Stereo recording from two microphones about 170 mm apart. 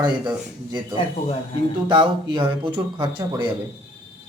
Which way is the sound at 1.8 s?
30° right (ahead or behind).